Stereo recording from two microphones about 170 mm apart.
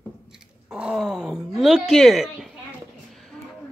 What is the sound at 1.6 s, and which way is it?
Speech, centre (ahead or behind).